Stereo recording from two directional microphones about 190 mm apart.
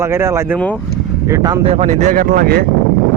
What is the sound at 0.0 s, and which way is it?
Speech, 15° right (ahead or behind).